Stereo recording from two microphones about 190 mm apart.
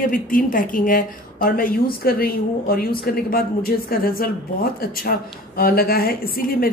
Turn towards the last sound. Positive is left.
turn(degrees=50)  # may be behind; listen again after turning